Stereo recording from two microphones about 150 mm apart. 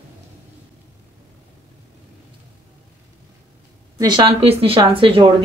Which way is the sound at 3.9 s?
25° right (ahead or behind).